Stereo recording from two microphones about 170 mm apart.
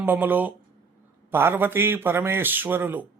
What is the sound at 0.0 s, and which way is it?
Speech, 10° right (ahead or behind).